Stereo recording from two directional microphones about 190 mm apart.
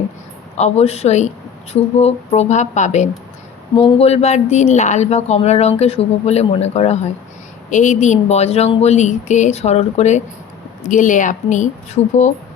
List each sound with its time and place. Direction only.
0.5 s speech: 35° left (ahead or behind)